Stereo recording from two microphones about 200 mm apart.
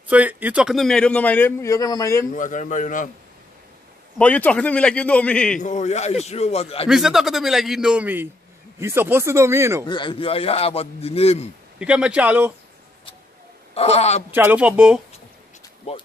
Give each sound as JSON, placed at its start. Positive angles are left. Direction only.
{"t": 0.1, "sound": "a man's voice", "side_deg": -10}
{"t": 2.3, "sound": "speech", "side_deg": 40}
{"t": 4.2, "sound": "a man's voice", "side_deg": 5}
{"t": 5.6, "sound": "speech", "side_deg": 35}
{"t": 6.9, "sound": "speech", "side_deg": 0}
{"t": 9.8, "sound": "speech", "side_deg": 25}
{"t": 11.8, "sound": "speech", "side_deg": -5}
{"t": 13.7, "sound": "speech", "side_deg": 30}
{"t": 14.3, "sound": "speech", "side_deg": -10}